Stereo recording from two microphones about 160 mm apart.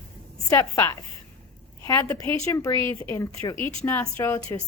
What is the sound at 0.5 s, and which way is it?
A woman's voice, 20° left (ahead or behind).